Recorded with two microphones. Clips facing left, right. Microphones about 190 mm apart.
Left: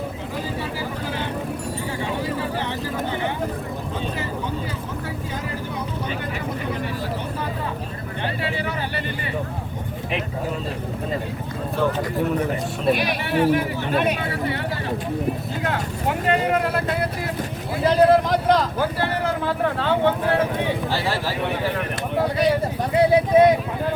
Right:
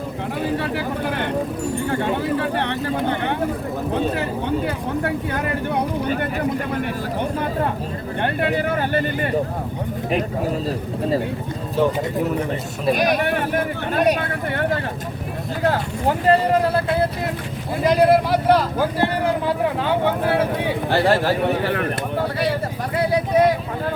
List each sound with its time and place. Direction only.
0.4 s speech: 65° right (ahead or behind)
1.9 s vehicle: 60° right (ahead or behind)
3.9 s speech: 60° right (ahead or behind)
8.2 s speech: 55° right (ahead or behind)
13.0 s speech: 45° right (ahead or behind)
15.6 s vehicle: 35° right (ahead or behind)
17.8 s a sound: 10° right (ahead or behind)
20.9 s speech: 55° right (ahead or behind)
23.1 s vehicle: 20° left (ahead or behind)